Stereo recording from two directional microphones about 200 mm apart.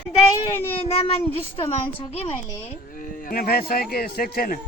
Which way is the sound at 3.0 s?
45° left (ahead or behind).